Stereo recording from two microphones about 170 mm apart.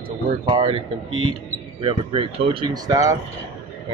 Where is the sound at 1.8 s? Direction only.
30° right (ahead or behind).